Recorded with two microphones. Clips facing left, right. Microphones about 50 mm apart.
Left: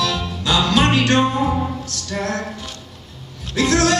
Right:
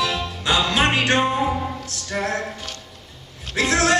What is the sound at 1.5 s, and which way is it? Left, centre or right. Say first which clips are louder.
Music: left 3 dB; centre.